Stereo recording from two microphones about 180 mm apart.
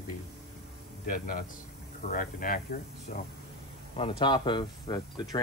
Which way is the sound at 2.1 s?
50° left (ahead or behind).